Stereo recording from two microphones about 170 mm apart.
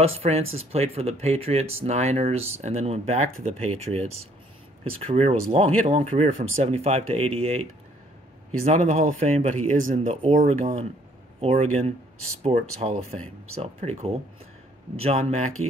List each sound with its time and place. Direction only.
0.2 s speech: 35° right (ahead or behind)
8.6 s speech: 40° right (ahead or behind)